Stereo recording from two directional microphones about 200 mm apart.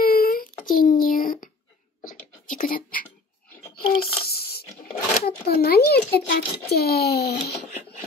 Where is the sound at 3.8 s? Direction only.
50° left (ahead or behind).